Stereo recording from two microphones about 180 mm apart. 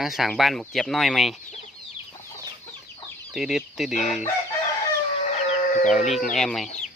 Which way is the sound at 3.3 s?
Centre (ahead or behind).